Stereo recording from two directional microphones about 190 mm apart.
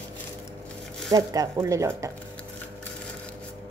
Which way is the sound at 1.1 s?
20° right (ahead or behind).